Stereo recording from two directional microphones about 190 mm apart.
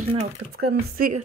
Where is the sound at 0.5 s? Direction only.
55° right (ahead or behind).